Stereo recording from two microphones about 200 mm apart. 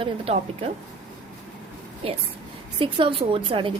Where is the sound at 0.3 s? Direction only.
30° right (ahead or behind).